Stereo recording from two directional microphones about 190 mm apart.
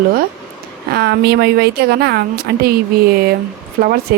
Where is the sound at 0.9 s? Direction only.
60° right (ahead or behind).